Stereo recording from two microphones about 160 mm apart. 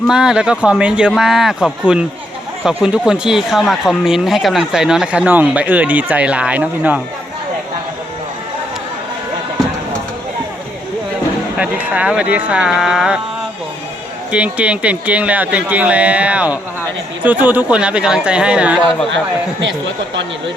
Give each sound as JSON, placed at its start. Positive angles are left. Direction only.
{"t": 0.1, "sound": "speech", "side_deg": -5}
{"t": 11.5, "sound": "speech", "side_deg": -10}
{"t": 14.3, "sound": "speech", "side_deg": -5}